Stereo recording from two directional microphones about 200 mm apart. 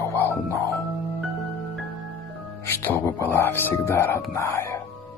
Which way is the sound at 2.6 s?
10° left (ahead or behind).